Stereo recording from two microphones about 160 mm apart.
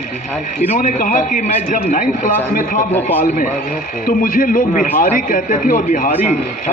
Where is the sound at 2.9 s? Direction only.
10° left (ahead or behind).